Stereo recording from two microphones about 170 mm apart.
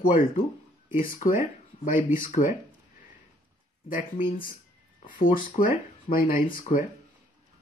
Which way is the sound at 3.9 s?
50° left (ahead or behind).